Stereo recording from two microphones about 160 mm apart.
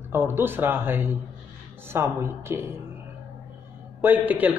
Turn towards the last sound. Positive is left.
turn(degrees=-10)  # may be behind; listen again after turning